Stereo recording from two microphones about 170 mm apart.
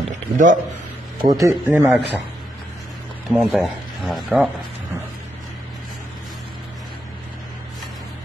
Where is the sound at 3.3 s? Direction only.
Centre (ahead or behind).